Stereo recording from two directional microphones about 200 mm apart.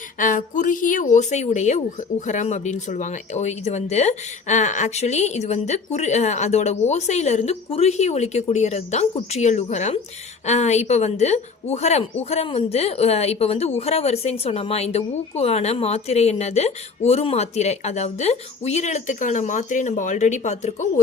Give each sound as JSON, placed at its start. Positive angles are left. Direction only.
{"t": 0.2, "sound": "a woman's voice", "side_deg": 40}